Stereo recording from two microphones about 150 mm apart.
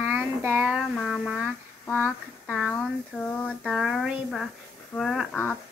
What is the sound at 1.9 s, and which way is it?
Speech, 10° left (ahead or behind).